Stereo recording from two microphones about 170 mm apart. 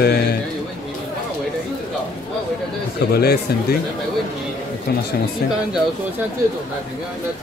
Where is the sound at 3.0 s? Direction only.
70° left (ahead or behind).